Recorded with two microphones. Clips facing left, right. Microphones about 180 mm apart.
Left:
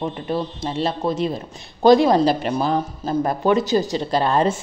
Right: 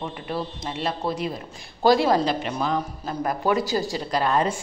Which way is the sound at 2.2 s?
35° left (ahead or behind).